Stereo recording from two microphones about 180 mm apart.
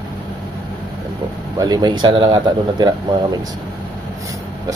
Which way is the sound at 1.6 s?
20° right (ahead or behind).